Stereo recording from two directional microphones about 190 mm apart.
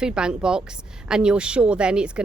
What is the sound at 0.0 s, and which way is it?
Speech, 5° right (ahead or behind).